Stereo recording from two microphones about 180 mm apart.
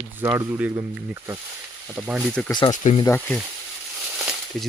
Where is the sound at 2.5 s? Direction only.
25° left (ahead or behind).